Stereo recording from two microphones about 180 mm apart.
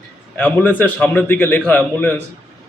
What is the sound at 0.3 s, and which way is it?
A man's voice, 10° left (ahead or behind).